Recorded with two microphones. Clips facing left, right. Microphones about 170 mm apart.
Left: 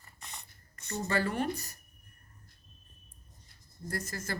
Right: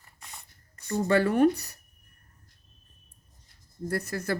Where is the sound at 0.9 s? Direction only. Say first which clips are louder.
Right 8 dB; 55° right (ahead or behind).